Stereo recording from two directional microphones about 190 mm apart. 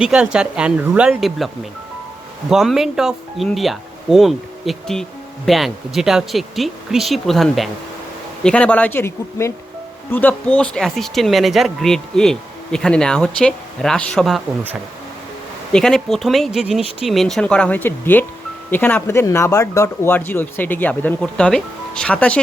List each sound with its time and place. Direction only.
0.0 s speech: 5° right (ahead or behind)
2.5 s speech: centre (ahead or behind)
15.7 s speech: centre (ahead or behind)